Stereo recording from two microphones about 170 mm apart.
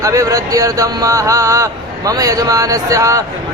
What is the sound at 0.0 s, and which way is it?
Speech, 20° right (ahead or behind).